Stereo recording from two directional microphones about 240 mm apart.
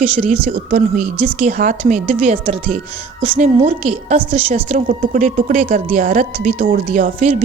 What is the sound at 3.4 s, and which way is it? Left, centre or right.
A woman's voice, right.